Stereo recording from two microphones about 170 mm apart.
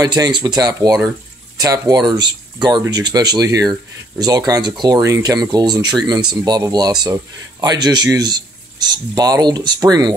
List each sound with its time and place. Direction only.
0.0 s speech: 25° right (ahead or behind)